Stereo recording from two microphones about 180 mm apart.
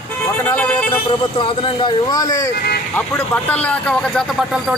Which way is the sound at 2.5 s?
60° left (ahead or behind).